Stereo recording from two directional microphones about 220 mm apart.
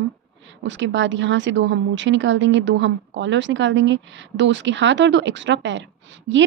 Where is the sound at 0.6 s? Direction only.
55° right (ahead or behind).